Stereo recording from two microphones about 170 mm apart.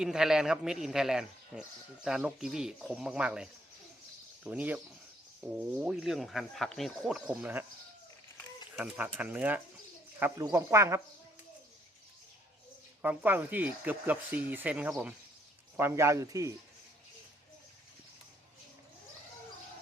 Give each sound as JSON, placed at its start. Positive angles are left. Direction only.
{"t": 0.0, "sound": "speech", "side_deg": -5}
{"t": 8.7, "sound": "speech", "side_deg": -10}
{"t": 13.0, "sound": "speech", "side_deg": -10}